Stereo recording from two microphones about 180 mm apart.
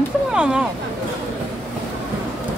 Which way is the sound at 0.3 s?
5° right (ahead or behind).